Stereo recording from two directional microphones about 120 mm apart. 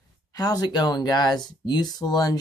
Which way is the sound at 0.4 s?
30° left (ahead or behind).